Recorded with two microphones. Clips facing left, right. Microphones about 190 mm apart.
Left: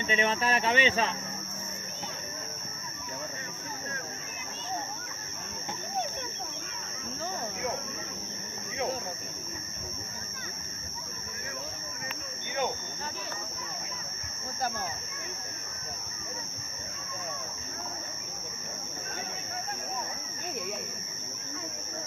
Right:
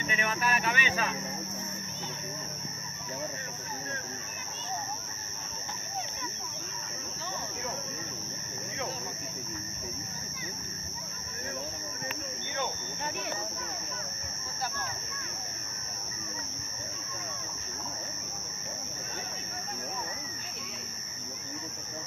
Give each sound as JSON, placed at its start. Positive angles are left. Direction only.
{"t": 0.0, "sound": "speech", "side_deg": 25}